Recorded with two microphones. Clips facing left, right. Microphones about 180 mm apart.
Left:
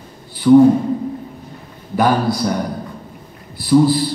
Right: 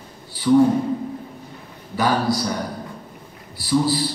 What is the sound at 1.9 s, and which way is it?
Speech, 55° left (ahead or behind).